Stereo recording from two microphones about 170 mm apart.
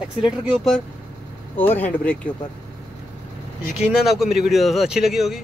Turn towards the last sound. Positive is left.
turn(degrees=0)  # may be behind; listen again after turning